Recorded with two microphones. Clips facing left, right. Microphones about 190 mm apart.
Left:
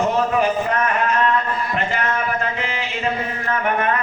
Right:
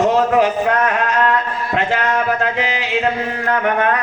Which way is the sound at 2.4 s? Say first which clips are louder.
Right 5 dB; 80° right.